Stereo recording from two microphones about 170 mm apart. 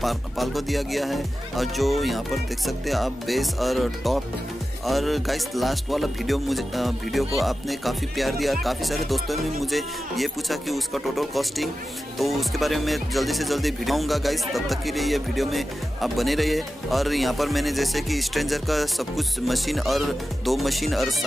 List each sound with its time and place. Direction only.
0.0 s speech: centre (ahead or behind)